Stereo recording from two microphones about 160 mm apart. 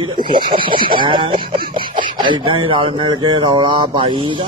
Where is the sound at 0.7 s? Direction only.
65° right (ahead or behind).